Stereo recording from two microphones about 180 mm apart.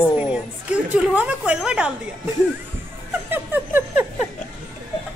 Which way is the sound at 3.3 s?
10° right (ahead or behind).